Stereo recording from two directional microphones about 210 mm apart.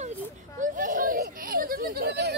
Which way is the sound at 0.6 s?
40° right (ahead or behind).